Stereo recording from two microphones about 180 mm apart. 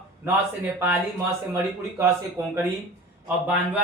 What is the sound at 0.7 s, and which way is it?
Speech, 10° right (ahead or behind).